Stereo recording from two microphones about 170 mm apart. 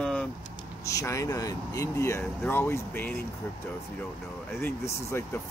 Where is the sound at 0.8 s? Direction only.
20° left (ahead or behind).